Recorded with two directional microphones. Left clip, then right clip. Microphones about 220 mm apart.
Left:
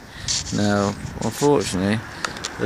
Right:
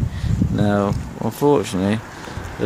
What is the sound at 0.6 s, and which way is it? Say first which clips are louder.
Speech: right 3 dB; centre (ahead or behind).